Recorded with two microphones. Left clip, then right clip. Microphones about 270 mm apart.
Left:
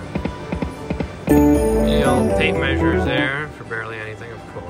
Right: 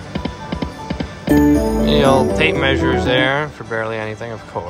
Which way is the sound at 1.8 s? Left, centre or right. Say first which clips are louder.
Right 4 dB; centre.